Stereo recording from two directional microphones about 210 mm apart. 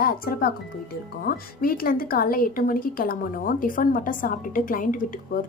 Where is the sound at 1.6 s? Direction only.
45° left (ahead or behind).